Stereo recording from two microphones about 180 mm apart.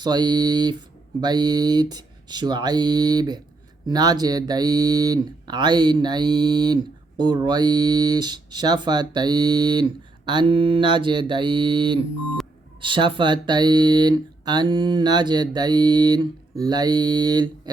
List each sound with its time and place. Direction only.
0.0 s speech: 25° right (ahead or behind)